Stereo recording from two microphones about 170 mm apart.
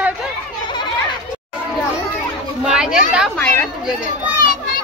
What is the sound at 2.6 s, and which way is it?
Speech, 5° right (ahead or behind).